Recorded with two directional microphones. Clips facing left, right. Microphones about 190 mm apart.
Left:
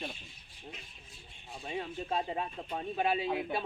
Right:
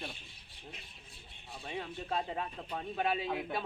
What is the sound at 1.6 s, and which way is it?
A man's voice, 10° left (ahead or behind).